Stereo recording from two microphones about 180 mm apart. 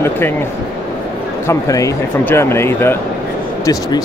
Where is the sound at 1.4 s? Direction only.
15° left (ahead or behind).